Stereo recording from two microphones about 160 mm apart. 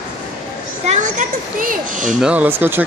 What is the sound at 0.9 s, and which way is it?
Children playing, 50° right (ahead or behind).